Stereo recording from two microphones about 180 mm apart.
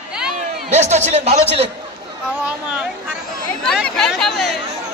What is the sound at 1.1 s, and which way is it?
Speech, 35° right (ahead or behind).